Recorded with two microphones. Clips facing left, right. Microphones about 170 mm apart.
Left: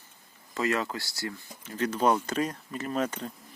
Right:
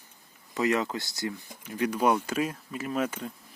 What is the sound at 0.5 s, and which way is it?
Speech, 20° right (ahead or behind).